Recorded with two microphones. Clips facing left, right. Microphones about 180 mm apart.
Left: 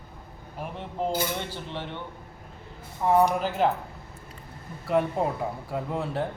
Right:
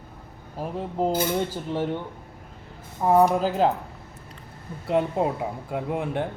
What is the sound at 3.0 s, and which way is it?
Speech, 40° right (ahead or behind).